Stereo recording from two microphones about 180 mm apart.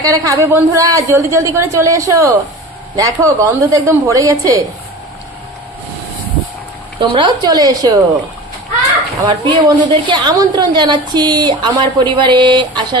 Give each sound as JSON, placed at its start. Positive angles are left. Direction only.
{"t": 0.0, "sound": "a woman's voice", "side_deg": -20}
{"t": 7.0, "sound": "a woman's voice", "side_deg": -25}
{"t": 9.2, "sound": "a woman's voice", "side_deg": -25}